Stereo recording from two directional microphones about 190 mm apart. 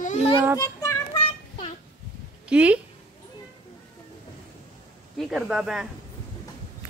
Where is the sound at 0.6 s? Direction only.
15° left (ahead or behind).